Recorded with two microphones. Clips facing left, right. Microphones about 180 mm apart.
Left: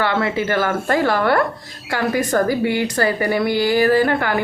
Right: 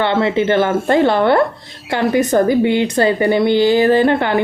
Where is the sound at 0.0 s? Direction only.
25° right (ahead or behind).